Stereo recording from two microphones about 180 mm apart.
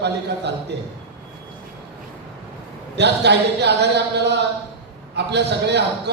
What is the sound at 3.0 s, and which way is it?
A man's voice, 70° right (ahead or behind).